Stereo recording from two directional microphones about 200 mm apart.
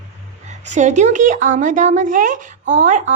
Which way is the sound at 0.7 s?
35° right (ahead or behind).